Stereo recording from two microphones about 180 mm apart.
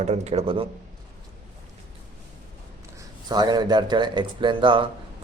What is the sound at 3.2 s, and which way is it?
Speech, 20° right (ahead or behind).